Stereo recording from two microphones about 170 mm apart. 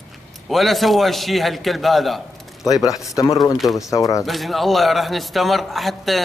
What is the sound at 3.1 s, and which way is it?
Speech, 20° left (ahead or behind).